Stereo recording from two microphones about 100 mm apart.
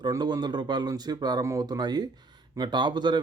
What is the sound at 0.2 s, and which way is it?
Speech, 45° right (ahead or behind).